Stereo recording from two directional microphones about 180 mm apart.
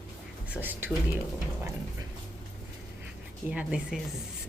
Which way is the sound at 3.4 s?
5° right (ahead or behind).